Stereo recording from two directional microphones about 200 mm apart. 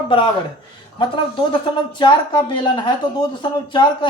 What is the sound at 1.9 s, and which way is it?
Speech, 25° left (ahead or behind).